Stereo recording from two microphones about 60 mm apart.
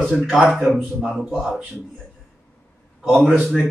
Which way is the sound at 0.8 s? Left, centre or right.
Centre.